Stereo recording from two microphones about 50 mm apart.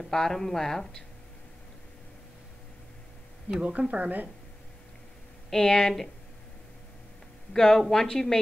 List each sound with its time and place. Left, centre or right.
0.0 s speech: centre
3.6 s speech: right
5.5 s speech: centre
7.5 s speech: centre